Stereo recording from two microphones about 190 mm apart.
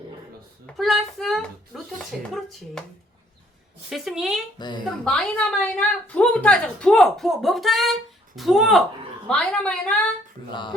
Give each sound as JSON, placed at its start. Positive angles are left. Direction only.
{"t": 0.8, "sound": "a sound", "side_deg": 0}
{"t": 3.8, "sound": "a woman's voice", "side_deg": 0}
{"t": 4.5, "sound": "speech", "side_deg": 25}
{"t": 5.0, "sound": "a woman's voice", "side_deg": 5}